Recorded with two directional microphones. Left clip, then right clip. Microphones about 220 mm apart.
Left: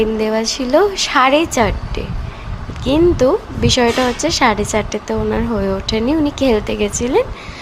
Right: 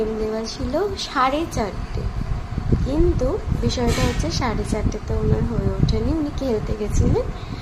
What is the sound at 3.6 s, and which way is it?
A woman's voice, 25° left (ahead or behind).